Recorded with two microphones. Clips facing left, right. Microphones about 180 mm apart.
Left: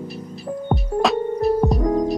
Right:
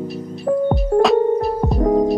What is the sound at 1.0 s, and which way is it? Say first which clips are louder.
Music: right 2 dB; centre (ahead or behind).